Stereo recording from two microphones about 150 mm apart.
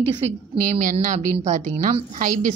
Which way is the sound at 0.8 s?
65° right (ahead or behind).